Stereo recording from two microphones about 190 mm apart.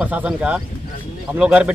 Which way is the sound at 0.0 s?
5° right (ahead or behind).